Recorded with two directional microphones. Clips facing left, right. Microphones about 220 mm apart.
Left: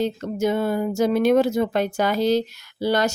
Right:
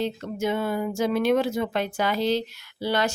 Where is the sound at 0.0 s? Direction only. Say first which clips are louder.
Left 4 dB; 40° left (ahead or behind).